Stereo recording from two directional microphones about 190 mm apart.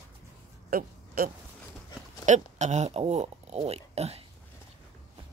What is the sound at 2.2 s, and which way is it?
Speech, 40° right (ahead or behind).